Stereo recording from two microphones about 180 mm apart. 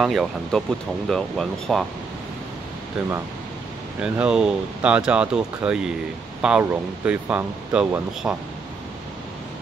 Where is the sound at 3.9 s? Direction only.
5° right (ahead or behind).